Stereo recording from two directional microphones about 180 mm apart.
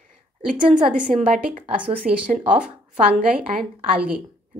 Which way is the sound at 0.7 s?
45° right (ahead or behind).